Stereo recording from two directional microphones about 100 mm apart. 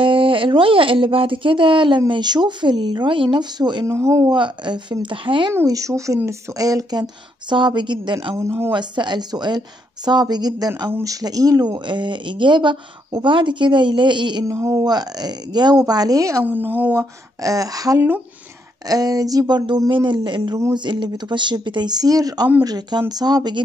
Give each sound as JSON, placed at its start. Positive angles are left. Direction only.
{"t": 0.0, "sound": "speech", "side_deg": -60}
{"t": 3.8, "sound": "speech", "side_deg": -30}
{"t": 4.3, "sound": "a woman's voice", "side_deg": -50}
{"t": 5.7, "sound": "a woman's voice", "side_deg": -35}
{"t": 8.4, "sound": "speech", "side_deg": -25}
{"t": 8.7, "sound": "a woman's voice", "side_deg": -50}
{"t": 10.9, "sound": "speech", "side_deg": -30}
{"t": 11.9, "sound": "a woman's voice", "side_deg": -50}
{"t": 14.4, "sound": "speech", "side_deg": -30}
{"t": 14.9, "sound": "a woman's voice", "side_deg": -45}
{"t": 16.4, "sound": "speech", "side_deg": -20}
{"t": 17.4, "sound": "a woman's voice", "side_deg": -35}